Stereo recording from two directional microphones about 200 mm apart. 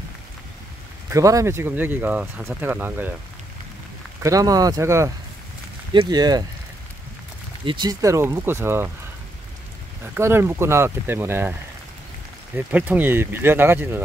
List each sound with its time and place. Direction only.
1.1 s speech: 15° right (ahead or behind)
4.2 s speech: 15° right (ahead or behind)
7.6 s speech: 20° right (ahead or behind)
10.1 s speech: 10° right (ahead or behind)
12.5 s speech: 10° right (ahead or behind)